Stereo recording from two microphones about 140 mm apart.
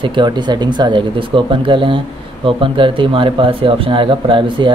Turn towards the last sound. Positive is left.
turn(degrees=-35)  # may be behind; listen again after turning